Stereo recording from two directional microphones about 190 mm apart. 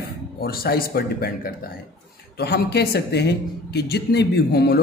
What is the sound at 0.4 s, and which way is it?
A man's voice, 55° left (ahead or behind).